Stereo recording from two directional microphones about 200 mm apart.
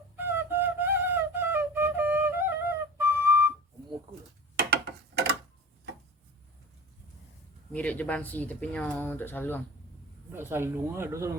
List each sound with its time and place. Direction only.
0.2 s flute: 10° right (ahead or behind)
4.5 s a sound: 55° right (ahead or behind)
7.7 s speech: 5° left (ahead or behind)
10.3 s speech: 10° right (ahead or behind)